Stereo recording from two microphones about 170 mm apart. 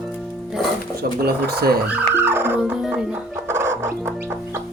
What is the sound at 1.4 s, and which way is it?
Speech, 70° right (ahead or behind).